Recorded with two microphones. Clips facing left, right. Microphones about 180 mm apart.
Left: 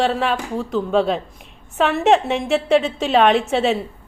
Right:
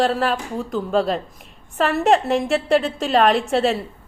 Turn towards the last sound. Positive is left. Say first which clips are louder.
# left 1 dB
turn(degrees=0)  # may be behind; listen again after turning